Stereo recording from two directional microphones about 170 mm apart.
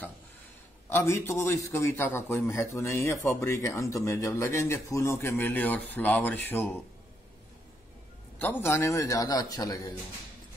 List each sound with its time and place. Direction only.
0.8 s a man's voice: 15° left (ahead or behind)
8.4 s a man's voice: 10° left (ahead or behind)